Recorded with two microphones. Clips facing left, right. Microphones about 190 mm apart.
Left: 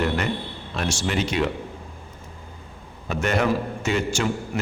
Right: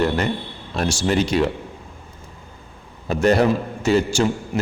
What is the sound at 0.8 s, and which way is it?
Speech, 35° right (ahead or behind).